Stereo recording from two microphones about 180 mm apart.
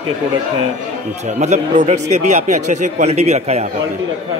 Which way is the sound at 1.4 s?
40° right (ahead or behind).